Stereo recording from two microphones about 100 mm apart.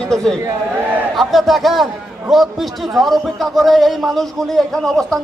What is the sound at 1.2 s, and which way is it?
A man's voice, centre (ahead or behind).